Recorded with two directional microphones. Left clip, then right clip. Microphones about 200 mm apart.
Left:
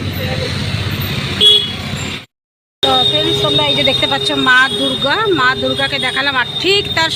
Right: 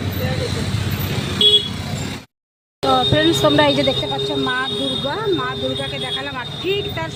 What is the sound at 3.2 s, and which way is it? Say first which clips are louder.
Speech: left 1 dB; 30° right (ahead or behind).